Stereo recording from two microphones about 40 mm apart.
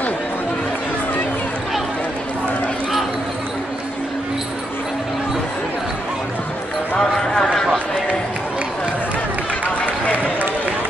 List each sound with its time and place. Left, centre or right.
7.0 s clip-clop: centre
7.5 s run: centre